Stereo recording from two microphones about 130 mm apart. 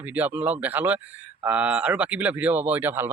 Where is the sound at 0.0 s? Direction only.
15° right (ahead or behind).